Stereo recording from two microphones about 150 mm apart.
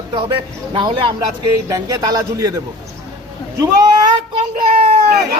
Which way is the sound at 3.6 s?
25° right (ahead or behind).